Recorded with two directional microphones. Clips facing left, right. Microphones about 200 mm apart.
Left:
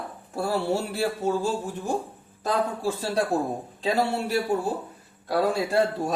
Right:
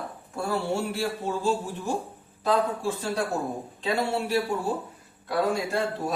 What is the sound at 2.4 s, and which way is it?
Speech, 40° left (ahead or behind).